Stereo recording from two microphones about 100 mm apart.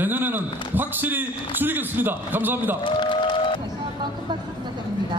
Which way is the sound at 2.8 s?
55° left (ahead or behind).